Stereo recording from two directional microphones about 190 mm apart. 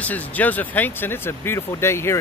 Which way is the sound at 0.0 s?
10° left (ahead or behind).